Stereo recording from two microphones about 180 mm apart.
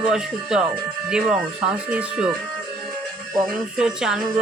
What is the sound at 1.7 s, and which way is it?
Speech, 5° right (ahead or behind).